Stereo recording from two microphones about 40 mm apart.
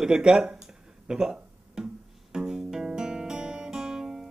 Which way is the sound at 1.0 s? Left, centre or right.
Centre.